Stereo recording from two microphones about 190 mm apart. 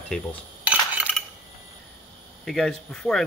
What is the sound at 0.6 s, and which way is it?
Coin, 5° right (ahead or behind).